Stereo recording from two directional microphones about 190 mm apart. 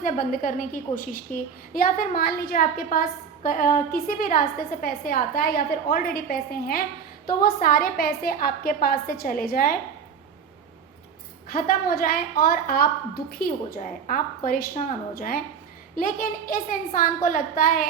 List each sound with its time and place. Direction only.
0.0 s a woman's voice: 45° left (ahead or behind)
11.4 s a woman's voice: 50° left (ahead or behind)